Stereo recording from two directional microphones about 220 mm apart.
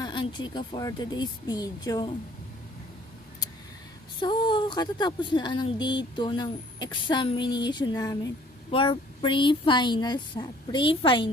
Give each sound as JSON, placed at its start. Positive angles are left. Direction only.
{"t": 0.0, "sound": "speech", "side_deg": 20}
{"t": 4.2, "sound": "speech", "side_deg": 20}